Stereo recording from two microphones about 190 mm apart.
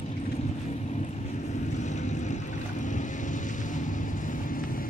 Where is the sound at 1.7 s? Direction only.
40° left (ahead or behind).